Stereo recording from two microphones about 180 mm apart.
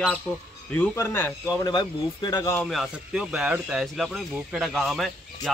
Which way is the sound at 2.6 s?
Centre (ahead or behind).